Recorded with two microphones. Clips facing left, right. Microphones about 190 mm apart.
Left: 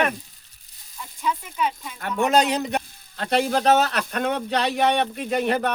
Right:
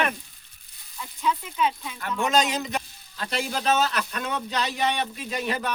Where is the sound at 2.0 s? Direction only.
60° left (ahead or behind).